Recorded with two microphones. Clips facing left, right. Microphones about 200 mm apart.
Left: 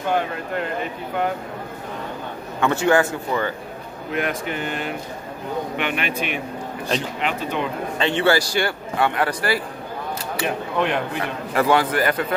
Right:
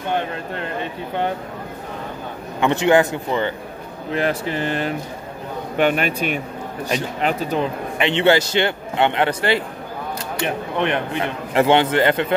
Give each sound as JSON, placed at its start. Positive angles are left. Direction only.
{"t": 2.6, "sound": "a man's voice", "side_deg": -20}
{"t": 4.1, "sound": "speech", "side_deg": -30}
{"t": 8.0, "sound": "a man's voice", "side_deg": -20}
{"t": 10.8, "sound": "a man's voice", "side_deg": -20}